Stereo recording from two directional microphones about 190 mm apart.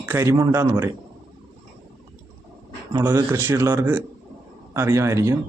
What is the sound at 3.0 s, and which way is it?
Speech, 10° right (ahead or behind).